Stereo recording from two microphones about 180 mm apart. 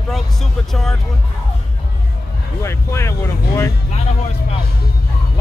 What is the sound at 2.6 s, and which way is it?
Music, 15° left (ahead or behind).